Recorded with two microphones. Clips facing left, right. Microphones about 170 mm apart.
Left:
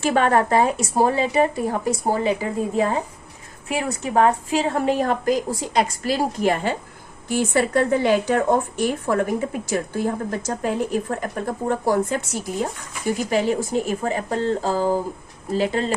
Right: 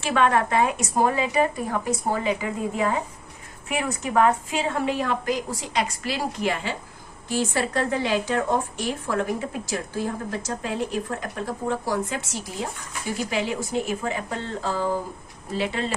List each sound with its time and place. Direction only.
0.0 s a woman's voice: 40° left (ahead or behind)